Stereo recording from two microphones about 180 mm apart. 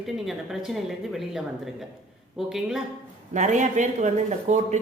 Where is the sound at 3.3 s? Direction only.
40° right (ahead or behind).